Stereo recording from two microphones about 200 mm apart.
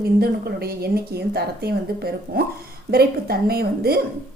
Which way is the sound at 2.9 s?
50° right (ahead or behind).